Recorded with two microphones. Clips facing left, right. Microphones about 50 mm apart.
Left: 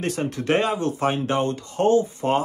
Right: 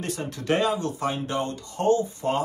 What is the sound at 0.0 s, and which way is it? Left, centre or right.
Speech, left.